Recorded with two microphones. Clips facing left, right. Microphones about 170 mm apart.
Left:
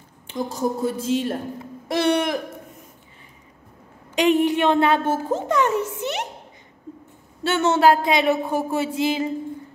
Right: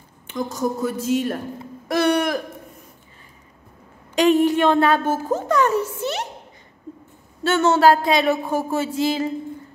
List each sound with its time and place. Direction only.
0.3 s a woman's voice: 30° left (ahead or behind)
4.1 s a sound: 15° left (ahead or behind)
5.3 s a woman's voice: 20° left (ahead or behind)
7.4 s speech: 20° left (ahead or behind)